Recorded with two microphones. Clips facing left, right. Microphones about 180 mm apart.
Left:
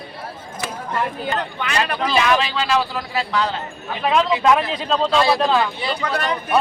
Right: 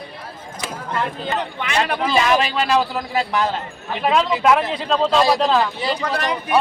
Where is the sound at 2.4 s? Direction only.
45° right (ahead or behind).